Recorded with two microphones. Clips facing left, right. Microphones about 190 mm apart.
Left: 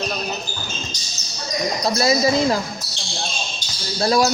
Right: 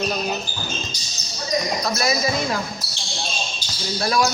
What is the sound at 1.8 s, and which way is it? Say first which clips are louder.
Speech: left 4 dB; 30° left (ahead or behind).